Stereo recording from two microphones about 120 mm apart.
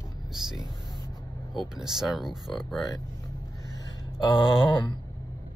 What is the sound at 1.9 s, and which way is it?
Speech, centre (ahead or behind).